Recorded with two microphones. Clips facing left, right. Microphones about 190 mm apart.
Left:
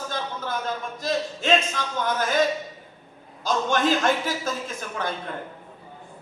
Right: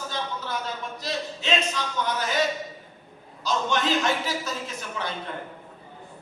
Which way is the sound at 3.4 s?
50° left (ahead or behind).